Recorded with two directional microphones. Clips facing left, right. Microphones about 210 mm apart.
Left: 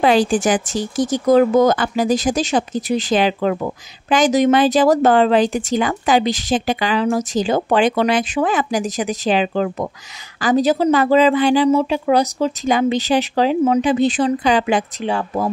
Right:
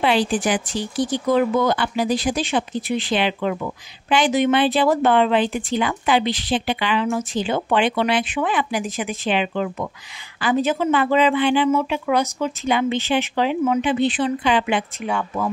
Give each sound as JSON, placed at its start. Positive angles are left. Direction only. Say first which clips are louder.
{"t": 0.0, "sound": "speech", "louder": "left 5 dB", "side_deg": 45}